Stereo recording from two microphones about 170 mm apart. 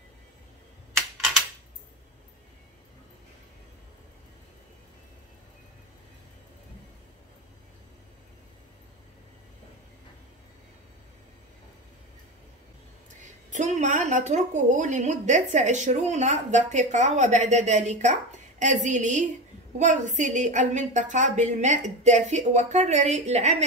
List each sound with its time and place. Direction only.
13.2 s a woman's voice: 45° right (ahead or behind)